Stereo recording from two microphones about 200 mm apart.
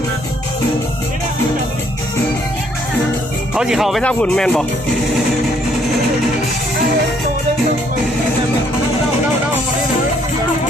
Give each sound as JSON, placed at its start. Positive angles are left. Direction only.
{"t": 3.5, "sound": "speech", "side_deg": -5}